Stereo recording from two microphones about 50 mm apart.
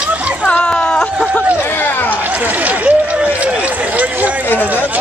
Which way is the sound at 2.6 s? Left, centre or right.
Right.